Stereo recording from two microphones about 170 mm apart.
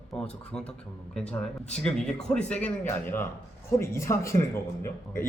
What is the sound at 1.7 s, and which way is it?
A man's voice, 5° left (ahead or behind).